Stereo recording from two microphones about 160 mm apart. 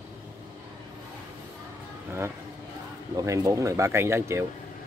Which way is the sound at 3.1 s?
20° right (ahead or behind).